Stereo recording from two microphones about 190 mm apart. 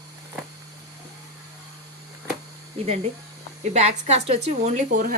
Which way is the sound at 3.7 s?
35° right (ahead or behind).